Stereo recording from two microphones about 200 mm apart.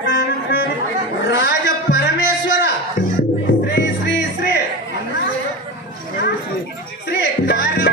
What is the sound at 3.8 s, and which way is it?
Music, 60° left (ahead or behind).